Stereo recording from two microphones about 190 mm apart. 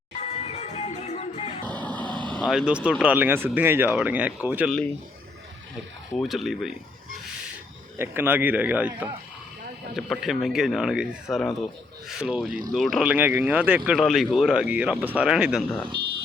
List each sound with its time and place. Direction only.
0.2 s music: 35° left (ahead or behind)
1.6 s music: 10° left (ahead or behind)
2.0 s vehicle: 25° right (ahead or behind)
2.5 s speech: 5° right (ahead or behind)
6.1 s speech: centre (ahead or behind)
7.9 s speech: 10° right (ahead or behind)
12.5 s speech: 45° right (ahead or behind)
12.7 s speech: centre (ahead or behind)